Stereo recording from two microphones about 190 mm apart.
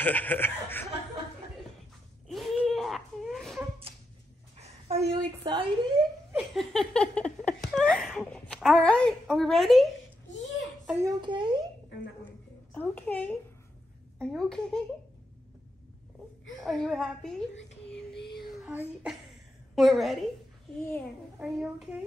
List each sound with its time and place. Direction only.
0.0 s speech: 10° left (ahead or behind)
2.2 s wail: centre (ahead or behind)
4.6 s a sound: 35° right (ahead or behind)
5.4 s speech: 25° right (ahead or behind)
6.3 s laughter: centre (ahead or behind)
10.9 s a sound: 15° right (ahead or behind)
11.1 s a woman's voice: 25° right (ahead or behind)
12.7 s a child's voice: 10° left (ahead or behind)
16.6 s a woman's voice: centre (ahead or behind)
18.5 s child singing: 5° right (ahead or behind)
19.7 s a woman's voice: centre (ahead or behind)
21.4 s a woman's voice: 5° right (ahead or behind)